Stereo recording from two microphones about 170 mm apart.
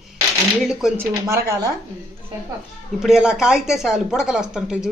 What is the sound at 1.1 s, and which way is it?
Speech, 15° right (ahead or behind).